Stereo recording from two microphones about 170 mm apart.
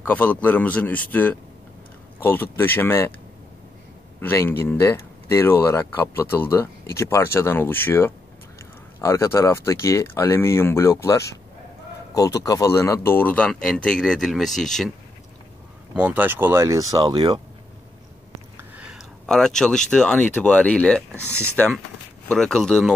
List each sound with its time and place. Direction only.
0.0 s speech: 10° left (ahead or behind)
2.1 s speech: 10° left (ahead or behind)
4.2 s speech: 15° left (ahead or behind)
15.9 s speech: 10° right (ahead or behind); by 17.4 s 25° right (ahead or behind)
18.6 s speech: 5° right (ahead or behind)
21.1 s speech: 15° right (ahead or behind)
21.5 s speech: 5° left (ahead or behind)